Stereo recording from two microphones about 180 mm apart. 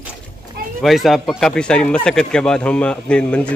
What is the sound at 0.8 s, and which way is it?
Speech, centre (ahead or behind).